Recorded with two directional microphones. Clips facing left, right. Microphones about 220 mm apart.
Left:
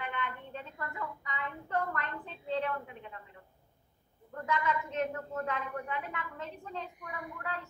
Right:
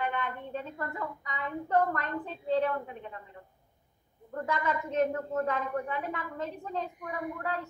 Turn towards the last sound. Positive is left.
turn(degrees=-40)  # may be behind; listen again after turning